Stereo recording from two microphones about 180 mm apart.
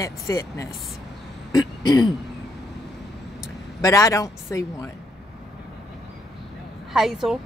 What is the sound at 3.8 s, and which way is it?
Speech, 20° left (ahead or behind).